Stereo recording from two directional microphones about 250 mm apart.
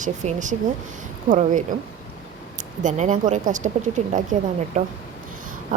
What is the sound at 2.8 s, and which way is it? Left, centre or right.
A woman's voice, right.